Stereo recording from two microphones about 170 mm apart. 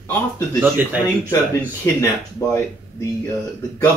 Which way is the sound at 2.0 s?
15° left (ahead or behind).